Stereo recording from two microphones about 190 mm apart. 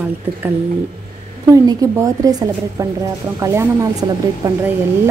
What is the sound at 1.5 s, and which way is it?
Speech, 20° right (ahead or behind).